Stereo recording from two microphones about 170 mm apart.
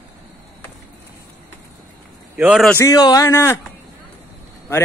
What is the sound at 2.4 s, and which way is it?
Speech, 5° right (ahead or behind).